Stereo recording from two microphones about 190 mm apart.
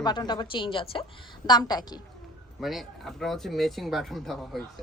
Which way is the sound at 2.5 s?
Centre (ahead or behind).